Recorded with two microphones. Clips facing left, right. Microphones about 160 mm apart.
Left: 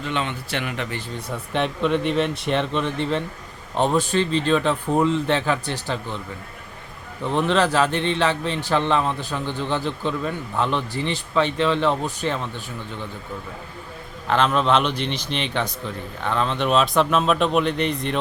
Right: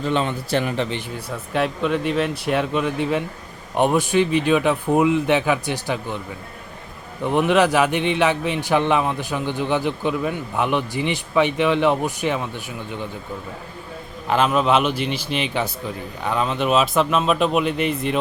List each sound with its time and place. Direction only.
0.0 s a man's voice: 35° right (ahead or behind)
1.1 s a man's voice: 5° right (ahead or behind)
7.3 s a man's voice: 15° right (ahead or behind)
14.3 s a man's voice: 10° right (ahead or behind)